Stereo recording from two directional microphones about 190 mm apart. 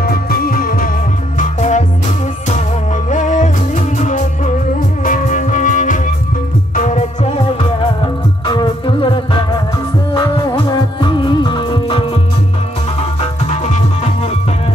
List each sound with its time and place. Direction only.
0.0 s music: 50° left (ahead or behind)
8.5 s music: 25° left (ahead or behind)
13.2 s music: 35° left (ahead or behind)